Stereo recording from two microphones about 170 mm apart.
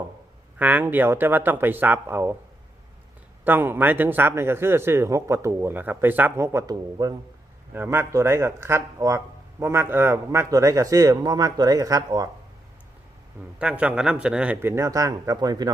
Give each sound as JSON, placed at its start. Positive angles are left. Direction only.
{"t": 0.6, "sound": "speech", "side_deg": -10}
{"t": 3.4, "sound": "speech", "side_deg": -10}
{"t": 13.6, "sound": "speech", "side_deg": -5}